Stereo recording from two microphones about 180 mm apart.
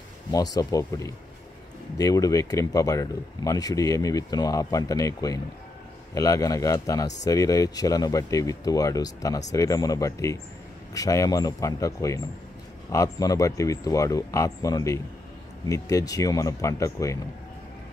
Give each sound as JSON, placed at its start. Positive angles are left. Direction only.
{"t": 0.3, "sound": "speech", "side_deg": 20}